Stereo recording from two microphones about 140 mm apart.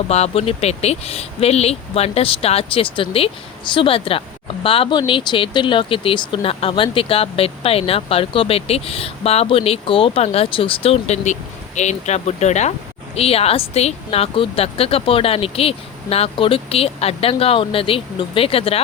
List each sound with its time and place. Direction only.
0.1 s speech: 45° left (ahead or behind)